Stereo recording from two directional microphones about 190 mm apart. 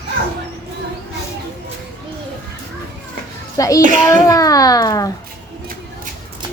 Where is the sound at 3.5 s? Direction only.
15° left (ahead or behind).